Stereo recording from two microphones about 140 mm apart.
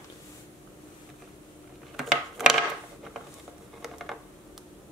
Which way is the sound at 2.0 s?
Centre (ahead or behind).